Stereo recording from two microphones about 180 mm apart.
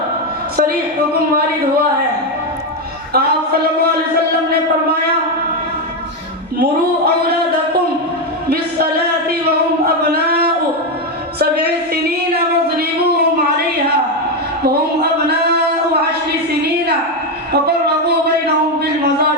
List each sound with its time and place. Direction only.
3.1 s speech: 60° right (ahead or behind)
6.6 s speech: 65° right (ahead or behind)
9.8 s a sound: 60° right (ahead or behind)